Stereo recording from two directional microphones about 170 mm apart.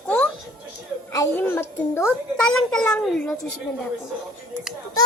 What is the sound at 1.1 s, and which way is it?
Speech, 15° left (ahead or behind).